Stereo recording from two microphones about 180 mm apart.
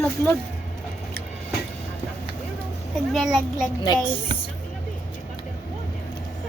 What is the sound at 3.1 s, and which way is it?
Speech, centre (ahead or behind).